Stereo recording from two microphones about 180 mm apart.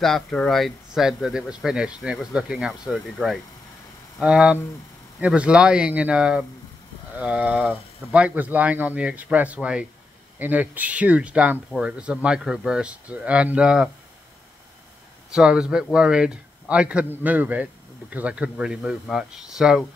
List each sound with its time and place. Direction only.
0.0 s speech: 5° left (ahead or behind)
15.3 s speech: 5° right (ahead or behind)